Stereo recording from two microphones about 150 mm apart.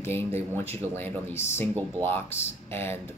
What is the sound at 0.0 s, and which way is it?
Speech, 15° left (ahead or behind).